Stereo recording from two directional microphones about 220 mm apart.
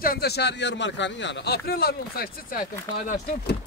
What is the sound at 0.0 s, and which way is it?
A man's voice, 45° left (ahead or behind).